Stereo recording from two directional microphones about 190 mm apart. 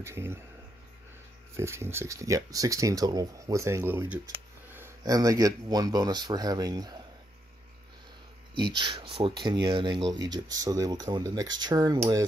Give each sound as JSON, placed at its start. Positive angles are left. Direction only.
{"t": 0.0, "sound": "speech", "side_deg": -15}
{"t": 1.6, "sound": "speech", "side_deg": -15}
{"t": 8.5, "sound": "speech", "side_deg": -25}